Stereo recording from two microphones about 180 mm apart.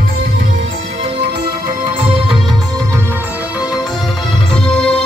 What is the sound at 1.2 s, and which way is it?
Music, 70° right (ahead or behind).